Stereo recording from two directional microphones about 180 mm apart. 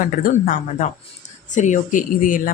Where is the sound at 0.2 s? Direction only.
50° left (ahead or behind).